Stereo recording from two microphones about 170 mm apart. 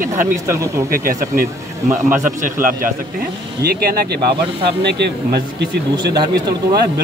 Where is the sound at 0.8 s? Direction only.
60° right (ahead or behind).